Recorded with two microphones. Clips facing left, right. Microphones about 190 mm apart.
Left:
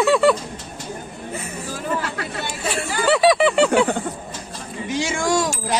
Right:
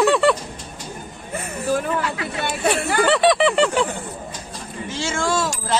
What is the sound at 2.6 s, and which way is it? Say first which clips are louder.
Chatter: right 6 dB; 60° right (ahead or behind).